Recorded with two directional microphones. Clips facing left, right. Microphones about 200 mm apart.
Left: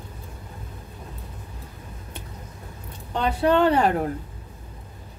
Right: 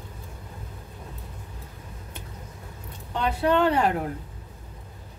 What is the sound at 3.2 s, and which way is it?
Speech, 30° left (ahead or behind).